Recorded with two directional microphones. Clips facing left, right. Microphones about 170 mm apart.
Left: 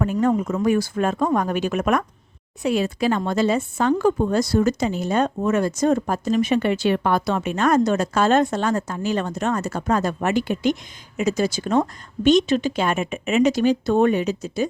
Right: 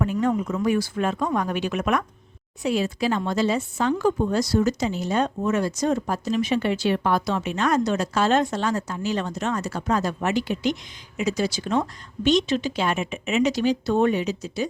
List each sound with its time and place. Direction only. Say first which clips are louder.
0.0 s a woman's voice: left 3 dB; 45° left (ahead or behind)
2.6 s a woman's voice: left 3 dB; 55° left (ahead or behind)